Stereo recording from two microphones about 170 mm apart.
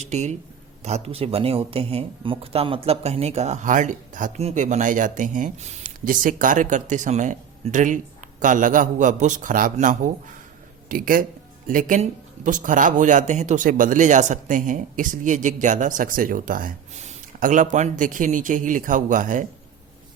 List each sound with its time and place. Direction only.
0.0 s speech: 40° right (ahead or behind)